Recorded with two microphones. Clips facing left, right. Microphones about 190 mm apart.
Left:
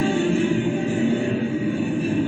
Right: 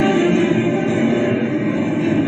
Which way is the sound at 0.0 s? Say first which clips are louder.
Right 6 dB; 90° right.